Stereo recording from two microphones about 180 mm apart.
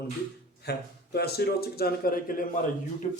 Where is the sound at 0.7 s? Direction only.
65° left (ahead or behind).